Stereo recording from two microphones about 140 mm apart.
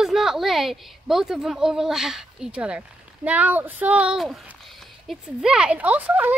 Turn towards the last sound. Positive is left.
turn(degrees=-10)  # may be behind; listen again after turning